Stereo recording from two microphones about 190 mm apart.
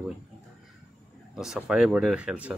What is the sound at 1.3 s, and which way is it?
A man's voice, 5° right (ahead or behind).